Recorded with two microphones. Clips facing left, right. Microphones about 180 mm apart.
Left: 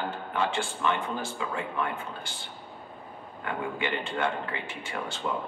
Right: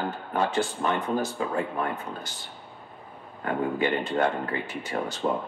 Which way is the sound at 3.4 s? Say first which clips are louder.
Right 6 dB; 40° right (ahead or behind).